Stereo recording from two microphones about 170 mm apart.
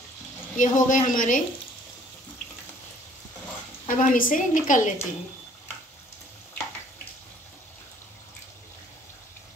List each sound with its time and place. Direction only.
0.6 s a woman's voice: 50° left (ahead or behind)
3.8 s a woman's voice: 50° left (ahead or behind)